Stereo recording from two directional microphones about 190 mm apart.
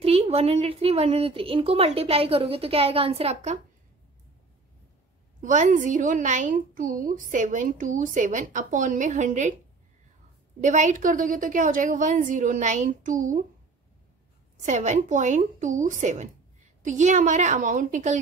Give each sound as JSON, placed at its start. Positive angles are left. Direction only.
{"t": 0.0, "sound": "a woman's voice", "side_deg": -30}
{"t": 5.4, "sound": "a woman's voice", "side_deg": -40}
{"t": 10.6, "sound": "a woman's voice", "side_deg": -40}
{"t": 14.6, "sound": "a woman's voice", "side_deg": -40}